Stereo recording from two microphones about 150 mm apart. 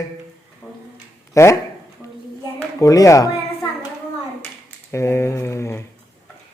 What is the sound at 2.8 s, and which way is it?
Speech, 20° left (ahead or behind).